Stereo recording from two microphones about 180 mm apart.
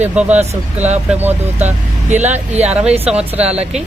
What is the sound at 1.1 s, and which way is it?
Speech, 10° right (ahead or behind).